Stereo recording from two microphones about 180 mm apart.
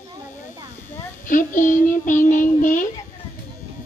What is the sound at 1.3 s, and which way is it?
Child singing, 50° left (ahead or behind).